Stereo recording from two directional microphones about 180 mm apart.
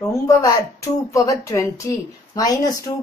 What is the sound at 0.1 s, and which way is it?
Speech, 20° left (ahead or behind).